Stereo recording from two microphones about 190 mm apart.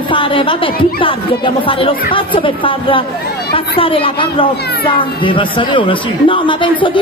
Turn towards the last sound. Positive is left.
turn(degrees=25)  # may be behind; listen again after turning